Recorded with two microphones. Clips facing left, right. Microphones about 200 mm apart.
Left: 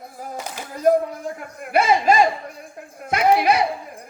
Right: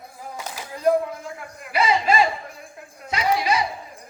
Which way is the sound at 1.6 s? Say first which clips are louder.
Left 4 dB; 50° left (ahead or behind).